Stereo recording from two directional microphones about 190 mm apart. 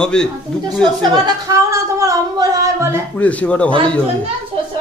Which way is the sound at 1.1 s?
15° right (ahead or behind).